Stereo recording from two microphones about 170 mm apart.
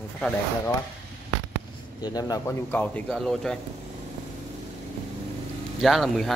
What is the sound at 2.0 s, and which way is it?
Speech, 20° left (ahead or behind).